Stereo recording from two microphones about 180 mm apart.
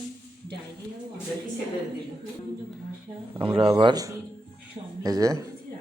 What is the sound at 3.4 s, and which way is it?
A man's voice, 30° right (ahead or behind).